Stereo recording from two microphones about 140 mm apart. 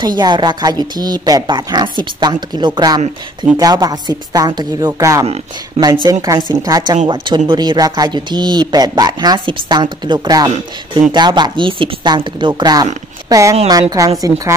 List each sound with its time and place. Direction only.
0.0 s speech: 30° right (ahead or behind)
6.5 s speech: 25° right (ahead or behind)